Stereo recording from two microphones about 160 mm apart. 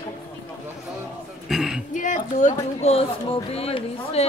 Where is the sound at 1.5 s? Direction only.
5° right (ahead or behind).